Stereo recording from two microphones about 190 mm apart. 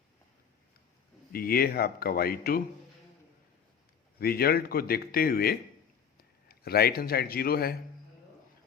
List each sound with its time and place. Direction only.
1.3 s a man's voice: 50° left (ahead or behind)
4.2 s a man's voice: 55° left (ahead or behind)